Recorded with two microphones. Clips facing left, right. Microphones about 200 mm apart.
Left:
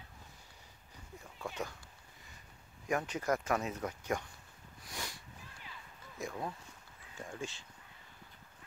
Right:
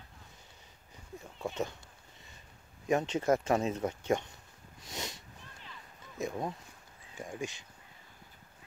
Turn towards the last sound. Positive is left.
turn(degrees=-15)  # may be behind; listen again after turning